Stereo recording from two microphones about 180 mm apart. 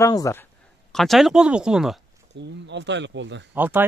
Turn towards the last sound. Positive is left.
turn(degrees=-10)  # may be behind; listen again after turning